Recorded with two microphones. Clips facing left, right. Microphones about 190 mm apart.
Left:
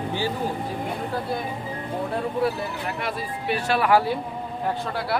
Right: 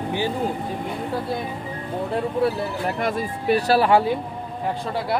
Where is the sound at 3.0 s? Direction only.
40° right (ahead or behind).